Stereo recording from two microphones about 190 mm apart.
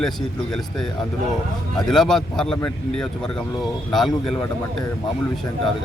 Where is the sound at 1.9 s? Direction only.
Centre (ahead or behind).